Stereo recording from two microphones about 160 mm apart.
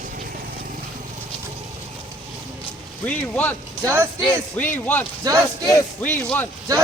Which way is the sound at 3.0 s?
10° left (ahead or behind).